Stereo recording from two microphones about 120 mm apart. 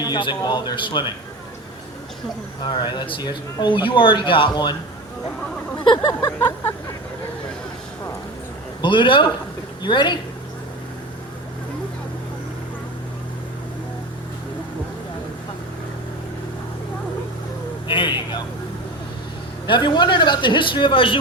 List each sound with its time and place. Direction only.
0.0 s a man's voice: 40° left (ahead or behind)
2.6 s a man's voice: 40° left (ahead or behind)
5.8 s a man's voice: 40° left (ahead or behind)
8.8 s a man's voice: 40° left (ahead or behind)
17.8 s vehicle: 45° left (ahead or behind)
19.6 s speech: 45° left (ahead or behind)